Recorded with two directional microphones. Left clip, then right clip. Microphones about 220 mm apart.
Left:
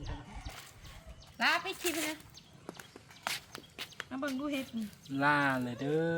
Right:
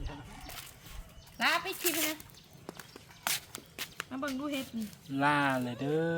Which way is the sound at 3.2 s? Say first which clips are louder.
Right 3 dB; 40° right (ahead or behind).